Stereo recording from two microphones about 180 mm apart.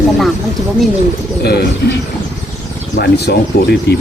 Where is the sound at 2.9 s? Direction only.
65° left (ahead or behind).